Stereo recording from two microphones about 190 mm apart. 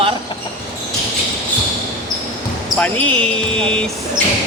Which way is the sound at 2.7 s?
5° left (ahead or behind).